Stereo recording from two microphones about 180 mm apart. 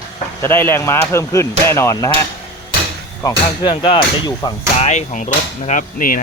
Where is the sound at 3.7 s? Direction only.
30° left (ahead or behind).